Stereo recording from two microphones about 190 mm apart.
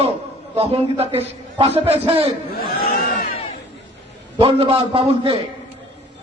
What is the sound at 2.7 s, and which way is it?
Crowd, 50° left (ahead or behind).